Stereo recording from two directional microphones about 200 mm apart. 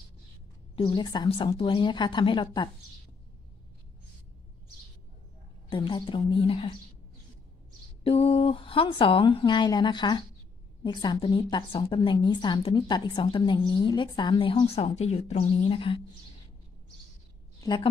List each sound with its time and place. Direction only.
0.7 s a woman's voice: 25° left (ahead or behind)
5.7 s a woman's voice: 25° left (ahead or behind)
8.0 s a woman's voice: 30° left (ahead or behind)
17.6 s a sound: 20° left (ahead or behind)